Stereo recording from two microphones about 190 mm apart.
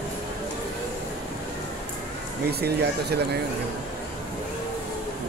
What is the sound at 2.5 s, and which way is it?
Speech, 60° right (ahead or behind).